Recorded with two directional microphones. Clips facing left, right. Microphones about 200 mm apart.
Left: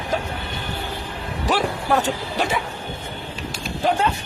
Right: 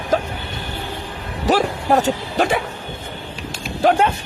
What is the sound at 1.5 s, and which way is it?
Speech, 40° right (ahead or behind).